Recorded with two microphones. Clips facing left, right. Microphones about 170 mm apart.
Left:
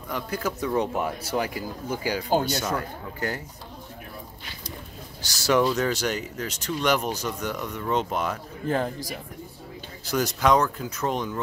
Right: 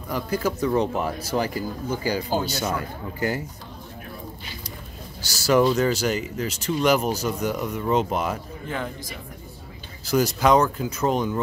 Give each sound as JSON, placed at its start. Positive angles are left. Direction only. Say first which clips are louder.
{"t": 0.1, "sound": "speech", "louder": "right 4 dB", "side_deg": 0}
{"t": 5.2, "sound": "speech", "louder": "right 3 dB", "side_deg": -5}
{"t": 8.6, "sound": "a man's voice", "louder": "left 6 dB", "side_deg": 40}
{"t": 10.1, "sound": "speech", "louder": "right 3 dB", "side_deg": 0}